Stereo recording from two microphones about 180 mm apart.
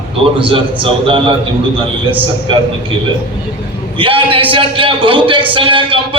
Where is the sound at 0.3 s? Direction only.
30° right (ahead or behind).